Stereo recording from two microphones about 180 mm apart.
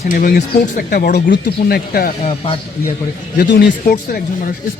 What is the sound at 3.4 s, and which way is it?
Speech, 60° left (ahead or behind).